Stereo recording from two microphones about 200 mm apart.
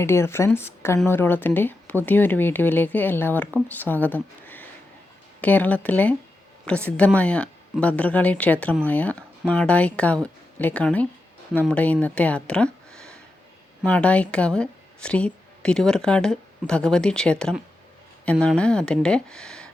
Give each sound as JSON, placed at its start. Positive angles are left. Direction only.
{"t": 0.0, "sound": "a woman's voice", "side_deg": 15}